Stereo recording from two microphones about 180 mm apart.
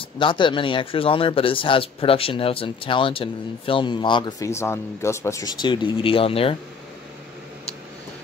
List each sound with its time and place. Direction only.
0.2 s a man's voice: 25° left (ahead or behind)